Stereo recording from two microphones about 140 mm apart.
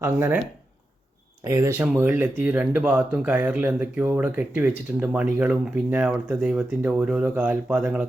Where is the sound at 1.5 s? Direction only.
20° right (ahead or behind).